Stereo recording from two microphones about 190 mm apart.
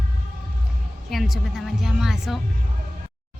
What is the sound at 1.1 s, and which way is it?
Speech, centre (ahead or behind).